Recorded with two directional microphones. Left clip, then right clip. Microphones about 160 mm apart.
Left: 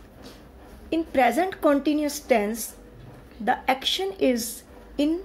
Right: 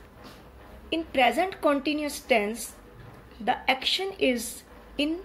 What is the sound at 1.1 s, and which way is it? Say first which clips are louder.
A woman's voice: left 2 dB; 25° left (ahead or behind).